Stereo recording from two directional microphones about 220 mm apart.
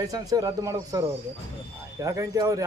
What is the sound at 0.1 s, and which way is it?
A man's voice, 15° right (ahead or behind).